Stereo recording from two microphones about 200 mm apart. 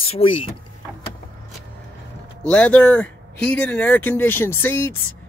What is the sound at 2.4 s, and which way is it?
Speech, 5° left (ahead or behind).